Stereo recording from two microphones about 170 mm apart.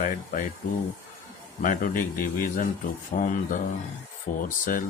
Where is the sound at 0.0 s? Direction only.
50° left (ahead or behind).